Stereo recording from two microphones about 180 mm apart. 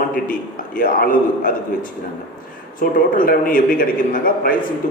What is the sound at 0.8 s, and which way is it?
A man's voice, 50° left (ahead or behind).